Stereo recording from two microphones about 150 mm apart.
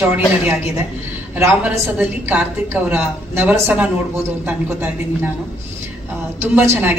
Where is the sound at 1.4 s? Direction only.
10° right (ahead or behind).